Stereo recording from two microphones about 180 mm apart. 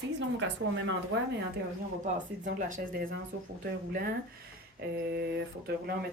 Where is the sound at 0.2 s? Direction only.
90° right.